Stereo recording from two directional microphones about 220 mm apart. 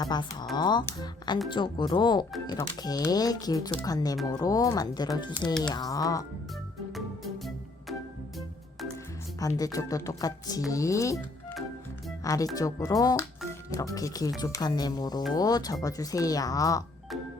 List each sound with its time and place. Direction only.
0.0 s speech: 20° left (ahead or behind)
6.9 s music: centre (ahead or behind)
9.6 s speech: 15° left (ahead or behind)